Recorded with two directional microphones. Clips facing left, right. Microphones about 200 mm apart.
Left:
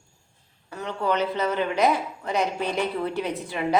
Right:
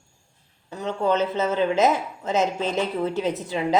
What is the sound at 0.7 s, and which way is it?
A woman's voice, 25° right (ahead or behind).